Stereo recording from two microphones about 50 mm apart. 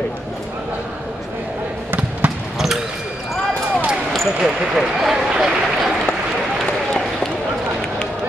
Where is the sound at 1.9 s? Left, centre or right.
Right.